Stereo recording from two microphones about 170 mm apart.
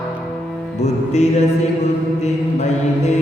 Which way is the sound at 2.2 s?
40° left (ahead or behind).